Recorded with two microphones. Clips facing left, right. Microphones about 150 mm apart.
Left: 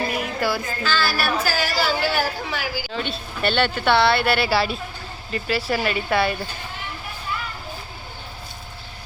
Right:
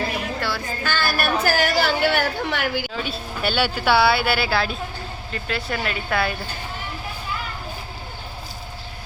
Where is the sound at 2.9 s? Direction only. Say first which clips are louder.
Even; 5° right (ahead or behind).